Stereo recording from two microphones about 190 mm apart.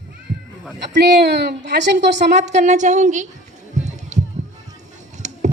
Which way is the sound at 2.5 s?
40° right (ahead or behind).